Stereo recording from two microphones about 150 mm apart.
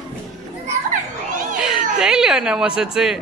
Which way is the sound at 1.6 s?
5° right (ahead or behind).